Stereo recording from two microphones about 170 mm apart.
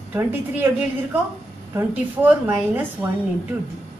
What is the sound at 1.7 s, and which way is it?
A woman's voice, 10° right (ahead or behind).